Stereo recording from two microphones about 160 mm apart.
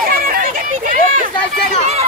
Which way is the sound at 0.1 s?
65° right (ahead or behind).